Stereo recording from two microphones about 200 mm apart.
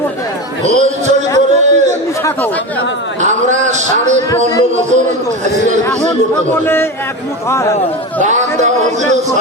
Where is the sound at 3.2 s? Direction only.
35° right (ahead or behind).